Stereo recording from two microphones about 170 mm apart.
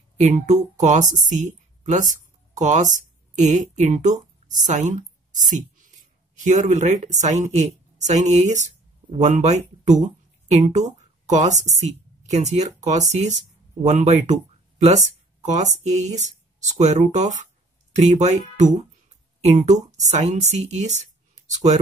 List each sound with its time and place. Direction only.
0.2 s speech: 45° right (ahead or behind)